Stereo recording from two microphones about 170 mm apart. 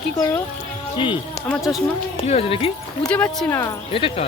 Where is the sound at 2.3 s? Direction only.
35° left (ahead or behind).